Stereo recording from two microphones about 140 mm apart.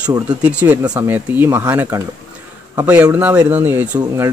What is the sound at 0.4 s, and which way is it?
Speech, 10° right (ahead or behind).